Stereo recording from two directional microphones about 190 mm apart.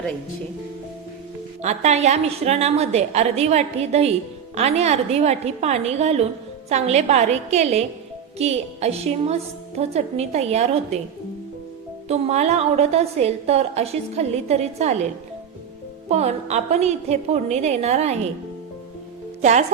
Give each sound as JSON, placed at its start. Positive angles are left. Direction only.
{"t": 1.6, "sound": "a woman's voice", "side_deg": -35}
{"t": 12.0, "sound": "a woman's voice", "side_deg": -35}
{"t": 16.0, "sound": "a woman's voice", "side_deg": -35}
{"t": 19.4, "sound": "speech", "side_deg": -35}